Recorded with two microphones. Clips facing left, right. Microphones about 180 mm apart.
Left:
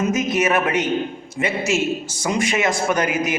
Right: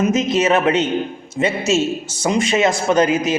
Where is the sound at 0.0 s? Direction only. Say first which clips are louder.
Right 3 dB; 20° right (ahead or behind).